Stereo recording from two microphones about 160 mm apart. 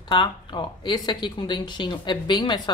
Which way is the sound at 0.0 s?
30° left (ahead or behind).